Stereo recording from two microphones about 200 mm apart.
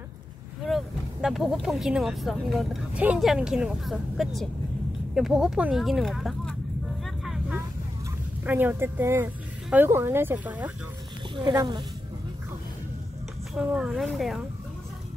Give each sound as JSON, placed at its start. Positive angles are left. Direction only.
{"t": 0.7, "sound": "speech", "side_deg": 0}
{"t": 7.2, "sound": "vehicle", "side_deg": -5}
{"t": 8.5, "sound": "speech", "side_deg": -10}
{"t": 11.3, "sound": "speech", "side_deg": -20}
{"t": 13.6, "sound": "speech", "side_deg": -5}